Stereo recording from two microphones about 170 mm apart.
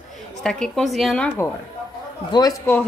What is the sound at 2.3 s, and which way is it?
Speech, 25° left (ahead or behind).